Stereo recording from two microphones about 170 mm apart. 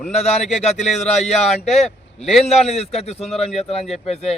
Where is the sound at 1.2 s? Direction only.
40° left (ahead or behind).